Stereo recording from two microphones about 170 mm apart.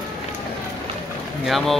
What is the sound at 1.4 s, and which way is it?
Speech, centre (ahead or behind).